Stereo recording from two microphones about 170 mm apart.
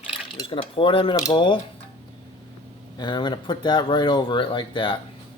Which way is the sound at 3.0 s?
25° left (ahead or behind).